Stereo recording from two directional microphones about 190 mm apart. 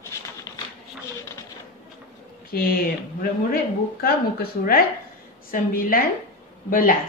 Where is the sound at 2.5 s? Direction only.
50° left (ahead or behind).